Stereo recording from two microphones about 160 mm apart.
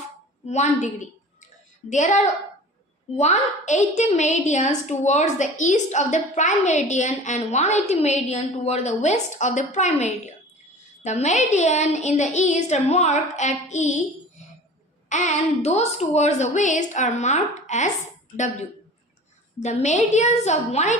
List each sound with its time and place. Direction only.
0.4 s a woman's voice: 45° left (ahead or behind)
19.6 s a woman's voice: 45° left (ahead or behind)